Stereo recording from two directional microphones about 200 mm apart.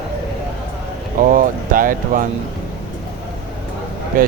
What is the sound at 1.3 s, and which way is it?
Speech, 45° right (ahead or behind).